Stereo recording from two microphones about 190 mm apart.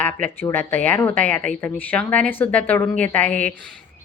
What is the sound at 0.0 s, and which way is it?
A woman's voice, 10° left (ahead or behind).